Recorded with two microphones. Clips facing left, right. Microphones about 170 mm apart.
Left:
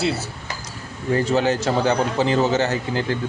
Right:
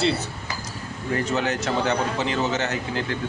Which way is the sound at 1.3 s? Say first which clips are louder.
Left 5 dB; 30° left (ahead or behind).